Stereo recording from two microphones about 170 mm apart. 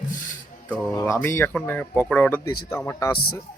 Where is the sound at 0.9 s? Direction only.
15° left (ahead or behind).